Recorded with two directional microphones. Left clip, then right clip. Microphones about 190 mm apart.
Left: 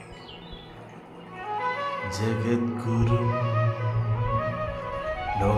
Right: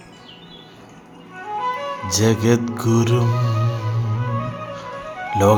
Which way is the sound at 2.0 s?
40° right (ahead or behind).